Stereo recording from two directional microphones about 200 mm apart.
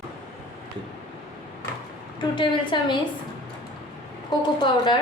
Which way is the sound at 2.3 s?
25° left (ahead or behind).